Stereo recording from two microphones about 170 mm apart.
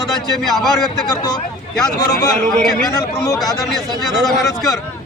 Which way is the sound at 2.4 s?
Centre (ahead or behind).